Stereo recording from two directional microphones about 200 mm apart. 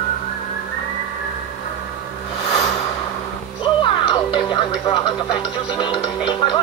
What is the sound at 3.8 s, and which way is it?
Speech, 25° left (ahead or behind).